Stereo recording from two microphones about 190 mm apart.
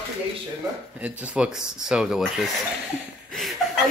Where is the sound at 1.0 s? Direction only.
5° right (ahead or behind).